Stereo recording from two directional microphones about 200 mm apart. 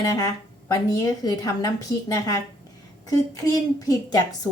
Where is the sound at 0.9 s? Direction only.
20° left (ahead or behind).